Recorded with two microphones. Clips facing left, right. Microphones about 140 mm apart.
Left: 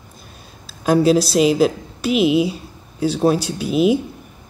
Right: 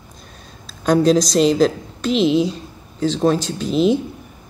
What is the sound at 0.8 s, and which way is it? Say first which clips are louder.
A woman's voice: even; 5° left (ahead or behind).